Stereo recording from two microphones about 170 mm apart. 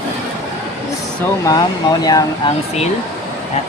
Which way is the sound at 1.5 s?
25° left (ahead or behind).